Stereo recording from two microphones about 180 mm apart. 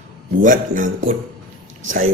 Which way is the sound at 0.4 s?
45° right (ahead or behind).